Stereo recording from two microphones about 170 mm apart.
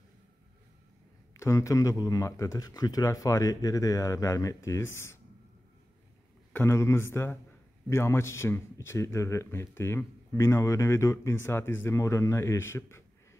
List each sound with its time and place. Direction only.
1.3 s speech: 15° left (ahead or behind)
6.5 s speech: 15° left (ahead or behind)